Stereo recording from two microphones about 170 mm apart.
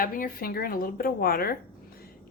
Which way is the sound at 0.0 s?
55° left (ahead or behind).